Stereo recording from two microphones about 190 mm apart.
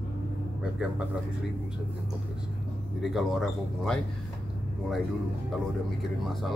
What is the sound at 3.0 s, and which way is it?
A man's voice, centre (ahead or behind).